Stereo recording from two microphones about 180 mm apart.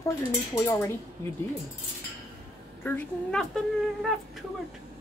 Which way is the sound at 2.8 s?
5° left (ahead or behind).